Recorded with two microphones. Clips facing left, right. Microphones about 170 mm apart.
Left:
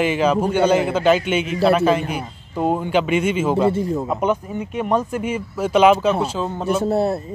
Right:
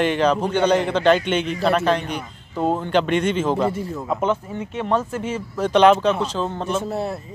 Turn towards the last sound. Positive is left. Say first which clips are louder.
# left 7 dB
turn(degrees=35)  # may be behind; listen again after turning